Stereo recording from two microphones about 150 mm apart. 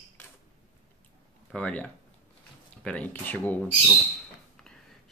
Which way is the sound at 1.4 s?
10° left (ahead or behind).